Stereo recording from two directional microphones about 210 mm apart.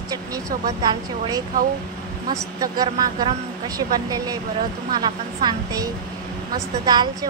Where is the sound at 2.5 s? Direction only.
20° right (ahead or behind).